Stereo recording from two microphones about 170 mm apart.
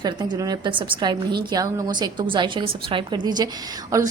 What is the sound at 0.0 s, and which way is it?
A woman's voice, 25° right (ahead or behind).